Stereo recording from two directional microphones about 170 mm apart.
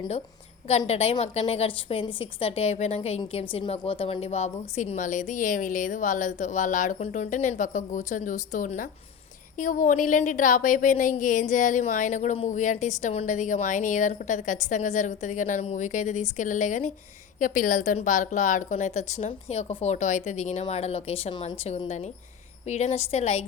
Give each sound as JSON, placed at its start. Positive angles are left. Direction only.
{"t": 0.7, "sound": "a woman's voice", "side_deg": 40}